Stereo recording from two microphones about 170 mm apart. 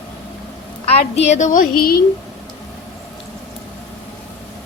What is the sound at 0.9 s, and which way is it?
A woman's voice, 40° left (ahead or behind).